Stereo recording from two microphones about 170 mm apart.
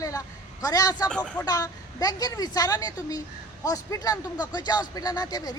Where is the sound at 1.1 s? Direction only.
5° left (ahead or behind).